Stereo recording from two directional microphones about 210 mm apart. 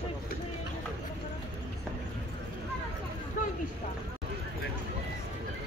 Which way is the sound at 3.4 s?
40° left (ahead or behind).